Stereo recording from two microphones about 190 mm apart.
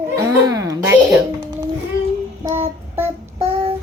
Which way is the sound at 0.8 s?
5° right (ahead or behind).